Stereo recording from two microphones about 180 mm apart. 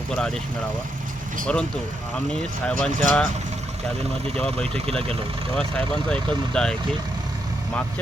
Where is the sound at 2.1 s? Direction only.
5° left (ahead or behind).